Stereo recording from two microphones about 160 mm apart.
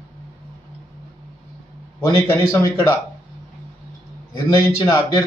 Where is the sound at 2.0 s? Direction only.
20° left (ahead or behind).